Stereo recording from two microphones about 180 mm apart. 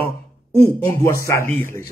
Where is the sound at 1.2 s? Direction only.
15° left (ahead or behind).